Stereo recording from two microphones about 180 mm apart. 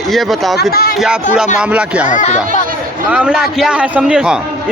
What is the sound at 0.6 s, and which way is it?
Speech, 60° left (ahead or behind).